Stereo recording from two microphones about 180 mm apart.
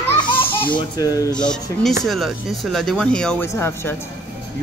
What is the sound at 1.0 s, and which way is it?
Speech, 20° left (ahead or behind).